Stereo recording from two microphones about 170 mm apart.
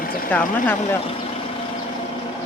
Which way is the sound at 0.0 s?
60° left (ahead or behind).